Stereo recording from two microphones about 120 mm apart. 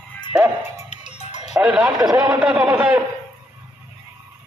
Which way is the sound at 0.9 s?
80° left.